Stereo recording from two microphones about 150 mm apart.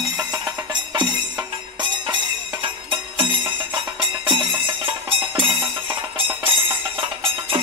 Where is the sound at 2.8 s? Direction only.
35° right (ahead or behind).